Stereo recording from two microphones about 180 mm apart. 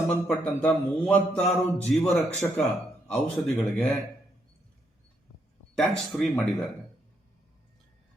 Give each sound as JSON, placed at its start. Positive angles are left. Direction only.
{"t": 0.1, "sound": "mantra", "side_deg": 10}
{"t": 5.7, "sound": "speech", "side_deg": 0}